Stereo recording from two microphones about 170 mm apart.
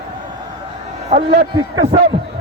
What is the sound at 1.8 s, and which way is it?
Speech, 35° right (ahead or behind).